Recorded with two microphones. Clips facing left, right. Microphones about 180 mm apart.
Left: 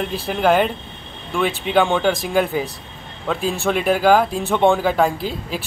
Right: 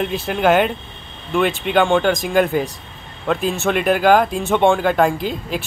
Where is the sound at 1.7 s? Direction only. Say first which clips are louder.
Right 1 dB; 5° left (ahead or behind).